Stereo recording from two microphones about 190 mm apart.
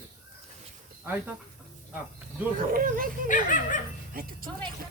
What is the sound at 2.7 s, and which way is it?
Speech, 45° right (ahead or behind).